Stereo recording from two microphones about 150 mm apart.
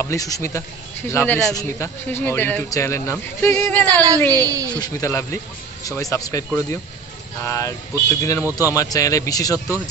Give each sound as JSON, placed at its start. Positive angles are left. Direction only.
{"t": 0.0, "sound": "speech", "side_deg": 20}
{"t": 4.3, "sound": "a woman's voice", "side_deg": -25}
{"t": 4.7, "sound": "speech", "side_deg": 25}